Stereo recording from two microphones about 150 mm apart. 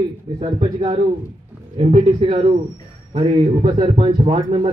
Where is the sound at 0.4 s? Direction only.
45° right (ahead or behind).